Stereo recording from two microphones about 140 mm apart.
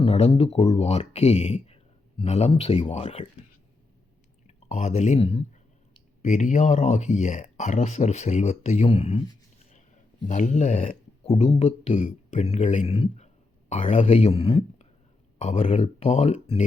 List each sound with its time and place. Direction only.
0.0 s speech: 45° left (ahead or behind)
4.4 s speech: 50° left (ahead or behind)
6.2 s speech: 60° left (ahead or behind)
9.7 s speech: 60° left (ahead or behind)
15.4 s speech: 55° left (ahead or behind)